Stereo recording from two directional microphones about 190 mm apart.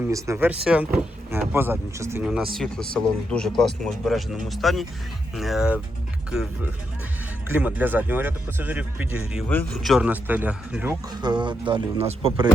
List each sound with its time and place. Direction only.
0.0 s speech: 15° right (ahead or behind)
7.4 s speech: 10° right (ahead or behind)
9.5 s speech: 10° left (ahead or behind)
9.9 s speech: 5° right (ahead or behind)
11.1 s speech: 20° right (ahead or behind)